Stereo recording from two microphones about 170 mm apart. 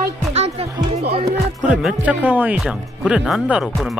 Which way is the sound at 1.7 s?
5° right (ahead or behind).